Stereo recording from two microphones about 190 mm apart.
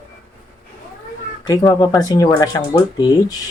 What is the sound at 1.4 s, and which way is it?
Speech, 15° left (ahead or behind).